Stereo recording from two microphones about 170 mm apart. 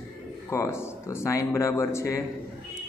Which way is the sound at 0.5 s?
15° left (ahead or behind).